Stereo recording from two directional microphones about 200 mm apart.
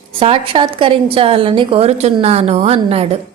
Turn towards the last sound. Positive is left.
turn(degrees=-30)  # may be behind; listen again after turning